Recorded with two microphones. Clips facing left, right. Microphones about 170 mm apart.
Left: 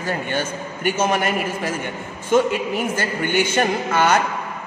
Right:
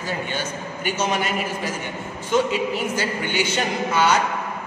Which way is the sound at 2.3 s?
50° left (ahead or behind).